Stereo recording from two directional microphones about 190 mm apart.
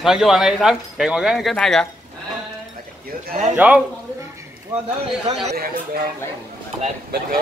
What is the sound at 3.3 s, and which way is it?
Speech, 40° right (ahead or behind).